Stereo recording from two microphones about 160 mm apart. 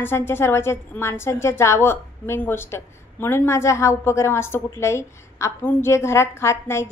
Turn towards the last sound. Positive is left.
turn(degrees=15)  # may be behind; listen again after turning